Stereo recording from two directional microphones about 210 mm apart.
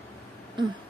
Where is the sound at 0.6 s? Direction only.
20° right (ahead or behind).